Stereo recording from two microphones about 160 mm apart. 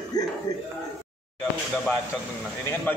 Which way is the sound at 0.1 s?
25° left (ahead or behind).